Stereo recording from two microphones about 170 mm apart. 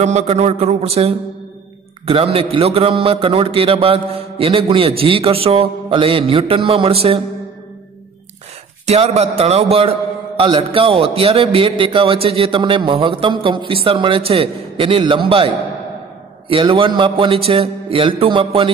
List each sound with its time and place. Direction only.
0.0 s a man's voice: 40° right (ahead or behind)
8.8 s a man's voice: 40° right (ahead or behind)